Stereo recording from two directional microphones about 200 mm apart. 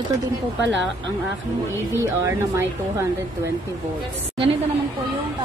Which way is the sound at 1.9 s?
15° right (ahead or behind).